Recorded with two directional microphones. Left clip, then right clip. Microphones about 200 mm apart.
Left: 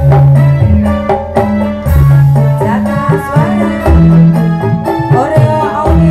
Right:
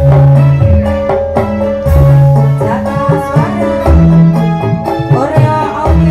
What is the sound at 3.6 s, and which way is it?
Music, 25° left (ahead or behind).